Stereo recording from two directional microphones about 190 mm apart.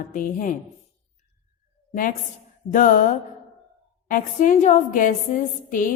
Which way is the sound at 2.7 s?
45° left (ahead or behind).